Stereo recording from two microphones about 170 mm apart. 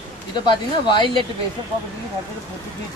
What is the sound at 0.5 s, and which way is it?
Speech, 25° left (ahead or behind).